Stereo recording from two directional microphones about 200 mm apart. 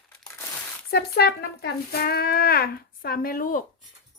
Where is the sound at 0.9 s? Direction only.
50° left (ahead or behind).